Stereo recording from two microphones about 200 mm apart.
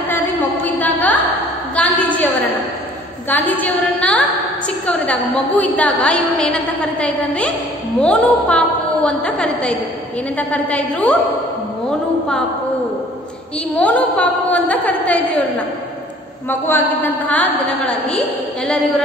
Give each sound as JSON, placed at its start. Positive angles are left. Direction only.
{"t": 0.7, "sound": "a sound", "side_deg": 10}
{"t": 3.3, "sound": "a woman's voice", "side_deg": 10}
{"t": 13.7, "sound": "a woman's voice", "side_deg": 5}